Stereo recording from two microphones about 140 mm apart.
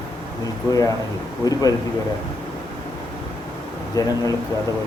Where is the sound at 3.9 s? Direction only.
25° left (ahead or behind).